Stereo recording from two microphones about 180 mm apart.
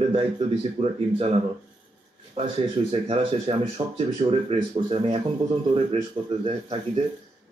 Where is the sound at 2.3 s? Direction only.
35° right (ahead or behind).